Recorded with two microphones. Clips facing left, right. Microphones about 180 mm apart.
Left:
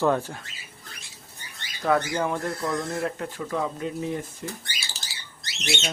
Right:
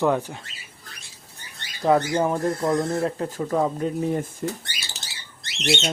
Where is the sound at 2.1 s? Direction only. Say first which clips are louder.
Right 5 dB; 35° right (ahead or behind).